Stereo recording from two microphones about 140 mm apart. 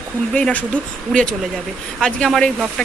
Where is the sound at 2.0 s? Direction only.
5° left (ahead or behind).